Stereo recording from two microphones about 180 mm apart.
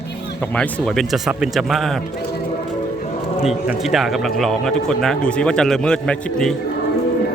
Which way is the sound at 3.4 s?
5° right (ahead or behind).